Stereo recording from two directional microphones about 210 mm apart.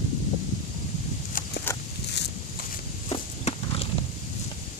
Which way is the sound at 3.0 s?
30° left (ahead or behind).